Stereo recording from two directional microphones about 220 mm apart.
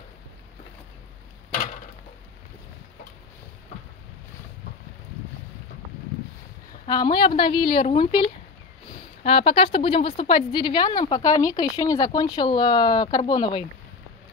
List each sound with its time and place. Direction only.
6.9 s a woman's voice: 20° left (ahead or behind)